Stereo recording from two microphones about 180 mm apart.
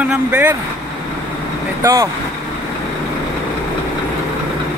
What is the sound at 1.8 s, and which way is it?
Speech, 15° right (ahead or behind).